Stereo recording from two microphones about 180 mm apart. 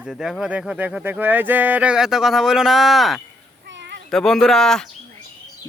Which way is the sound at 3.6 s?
70° right (ahead or behind).